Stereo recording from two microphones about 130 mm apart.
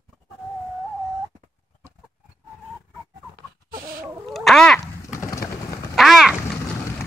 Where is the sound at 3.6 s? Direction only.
90° right.